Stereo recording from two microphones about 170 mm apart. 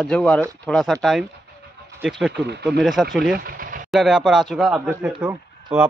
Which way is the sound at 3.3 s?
60° right (ahead or behind).